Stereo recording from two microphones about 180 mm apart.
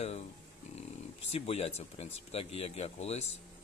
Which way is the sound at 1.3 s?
35° left (ahead or behind).